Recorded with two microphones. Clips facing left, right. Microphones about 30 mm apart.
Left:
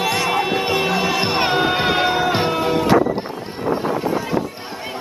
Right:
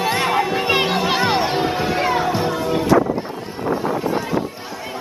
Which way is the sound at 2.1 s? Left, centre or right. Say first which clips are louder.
Left 1 dB; left.